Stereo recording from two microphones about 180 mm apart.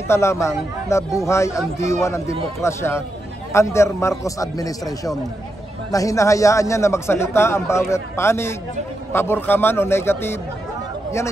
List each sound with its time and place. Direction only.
0.1 s a man's voice: 15° left (ahead or behind)